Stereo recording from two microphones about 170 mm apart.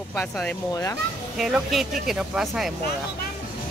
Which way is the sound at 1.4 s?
Centre (ahead or behind).